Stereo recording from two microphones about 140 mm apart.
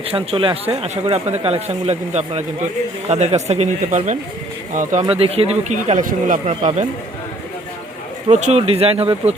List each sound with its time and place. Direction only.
0.1 s speech: 40° right (ahead or behind); by 5.0 s 65° right (ahead or behind)
5.0 s speech: 45° right (ahead or behind); by 6.5 s 70° right (ahead or behind)
6.5 s speech: 55° right (ahead or behind)
8.3 s speech: 55° right (ahead or behind)